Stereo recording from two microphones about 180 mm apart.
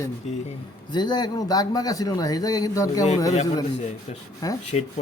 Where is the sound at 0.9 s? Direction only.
25° left (ahead or behind).